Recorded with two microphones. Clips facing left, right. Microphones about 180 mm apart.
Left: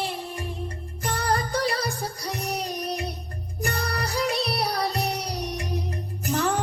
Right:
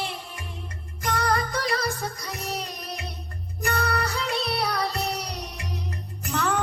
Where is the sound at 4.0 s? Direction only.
35° left (ahead or behind).